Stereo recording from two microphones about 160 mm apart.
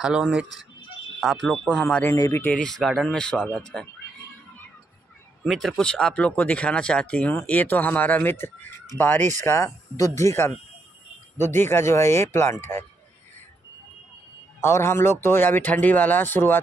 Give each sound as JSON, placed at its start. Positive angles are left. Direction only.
{"t": 0.0, "sound": "speech", "side_deg": -5}
{"t": 2.1, "sound": "speech", "side_deg": 20}
{"t": 5.4, "sound": "speech", "side_deg": 0}
{"t": 14.6, "sound": "speech", "side_deg": 15}